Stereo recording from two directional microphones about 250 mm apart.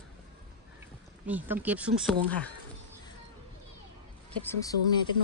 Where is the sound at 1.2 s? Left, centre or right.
Centre.